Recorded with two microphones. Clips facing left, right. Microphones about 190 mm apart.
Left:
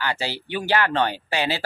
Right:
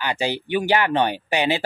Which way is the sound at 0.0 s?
15° right (ahead or behind).